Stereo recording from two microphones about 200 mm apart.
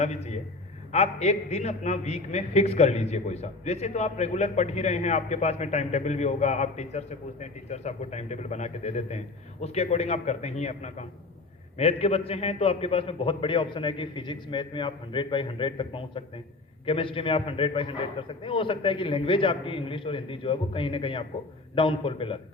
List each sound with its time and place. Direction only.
0.0 s a man's voice: 35° left (ahead or behind)